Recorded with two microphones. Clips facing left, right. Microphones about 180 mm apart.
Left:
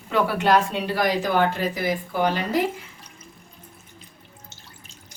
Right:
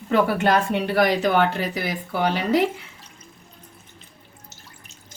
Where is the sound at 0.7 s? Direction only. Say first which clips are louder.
Right 3 dB; 65° right (ahead or behind).